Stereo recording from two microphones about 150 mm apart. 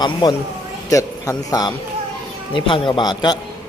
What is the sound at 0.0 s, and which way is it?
Speech, 30° left (ahead or behind).